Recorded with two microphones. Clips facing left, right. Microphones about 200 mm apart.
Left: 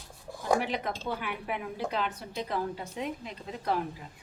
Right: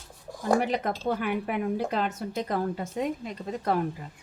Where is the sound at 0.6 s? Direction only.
45° right (ahead or behind).